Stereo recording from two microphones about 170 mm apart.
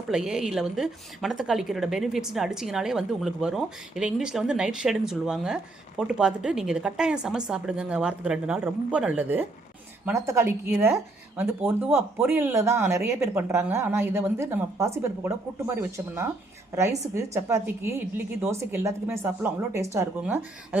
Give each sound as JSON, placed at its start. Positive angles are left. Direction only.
{"t": 0.1, "sound": "a woman's voice", "side_deg": -5}